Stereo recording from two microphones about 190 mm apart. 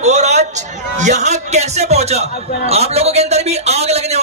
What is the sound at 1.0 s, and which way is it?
A man's voice, 40° right (ahead or behind).